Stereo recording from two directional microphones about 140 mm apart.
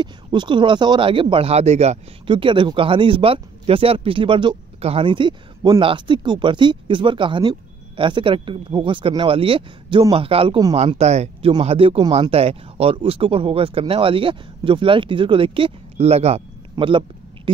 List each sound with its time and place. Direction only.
0.0 s speech: 35° right (ahead or behind); by 2.0 s 50° right (ahead or behind)
2.2 s speech: 35° right (ahead or behind)
11.0 s speech: 50° right (ahead or behind)
16.7 s speech: 35° right (ahead or behind)